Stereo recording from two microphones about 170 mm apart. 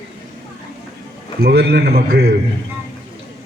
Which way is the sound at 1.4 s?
70° right (ahead or behind).